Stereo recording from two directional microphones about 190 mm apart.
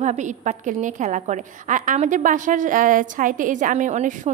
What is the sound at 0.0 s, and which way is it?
A woman's voice, 40° right (ahead or behind).